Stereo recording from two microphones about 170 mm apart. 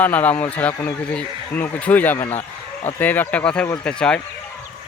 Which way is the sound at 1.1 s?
10° left (ahead or behind).